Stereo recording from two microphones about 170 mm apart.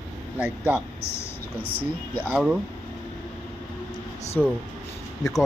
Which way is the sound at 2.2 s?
5° right (ahead or behind).